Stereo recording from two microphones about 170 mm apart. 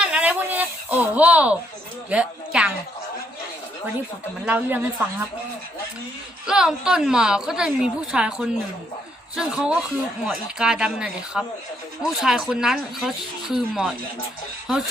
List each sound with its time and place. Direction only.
0.0 s a sound: 5° right (ahead or behind)
2.0 s a woman's voice: 5° right (ahead or behind)
4.4 s a woman's voice: 10° right (ahead or behind)
6.5 s speech: 5° right (ahead or behind)